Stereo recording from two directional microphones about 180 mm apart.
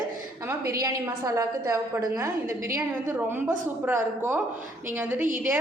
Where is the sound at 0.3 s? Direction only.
15° right (ahead or behind).